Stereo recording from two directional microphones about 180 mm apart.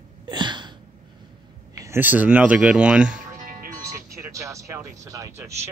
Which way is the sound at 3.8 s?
15° right (ahead or behind).